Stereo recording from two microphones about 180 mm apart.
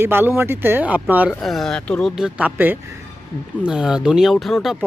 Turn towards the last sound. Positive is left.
turn(degrees=0)  # may be behind; listen again after turning